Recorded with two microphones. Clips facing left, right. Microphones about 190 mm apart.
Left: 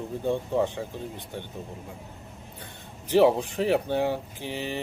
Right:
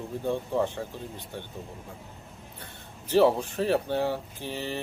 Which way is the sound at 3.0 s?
15° left (ahead or behind).